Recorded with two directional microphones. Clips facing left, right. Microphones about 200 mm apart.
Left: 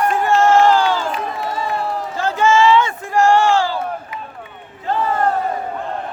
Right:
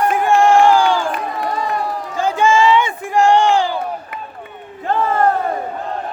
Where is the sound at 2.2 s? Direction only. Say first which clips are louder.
Right 1 dB; 15° right (ahead or behind).